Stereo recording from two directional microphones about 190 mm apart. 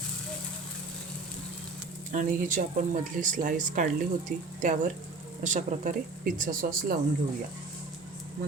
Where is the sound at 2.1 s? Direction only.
45° right (ahead or behind).